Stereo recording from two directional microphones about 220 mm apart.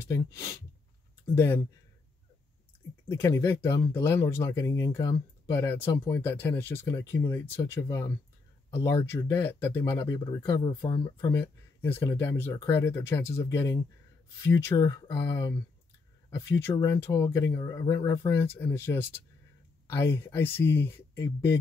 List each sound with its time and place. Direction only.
0.0 s speech: 15° left (ahead or behind)
3.1 s speech: 10° left (ahead or behind)